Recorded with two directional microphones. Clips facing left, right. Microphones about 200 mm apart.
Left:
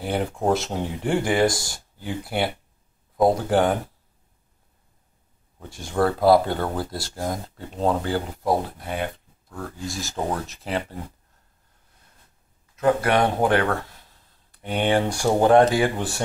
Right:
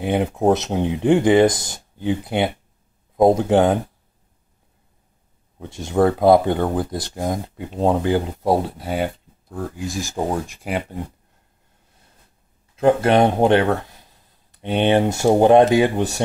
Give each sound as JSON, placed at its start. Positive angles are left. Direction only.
{"t": 0.0, "sound": "speech", "side_deg": -20}
{"t": 5.6, "sound": "speech", "side_deg": -20}
{"t": 9.6, "sound": "speech", "side_deg": -20}
{"t": 12.7, "sound": "speech", "side_deg": -25}